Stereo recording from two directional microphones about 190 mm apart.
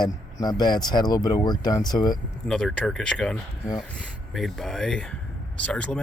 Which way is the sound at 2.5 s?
5° left (ahead or behind).